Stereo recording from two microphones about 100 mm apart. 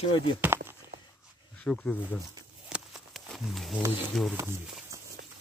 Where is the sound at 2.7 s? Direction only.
5° right (ahead or behind).